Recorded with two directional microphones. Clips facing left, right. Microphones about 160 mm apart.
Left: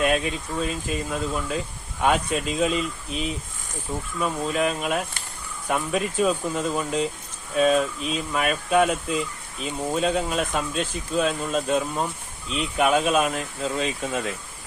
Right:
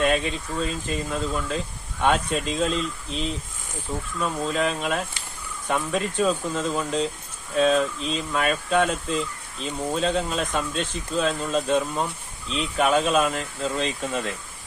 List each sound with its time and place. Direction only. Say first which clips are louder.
0.0 s speech: even; 5° left (ahead or behind)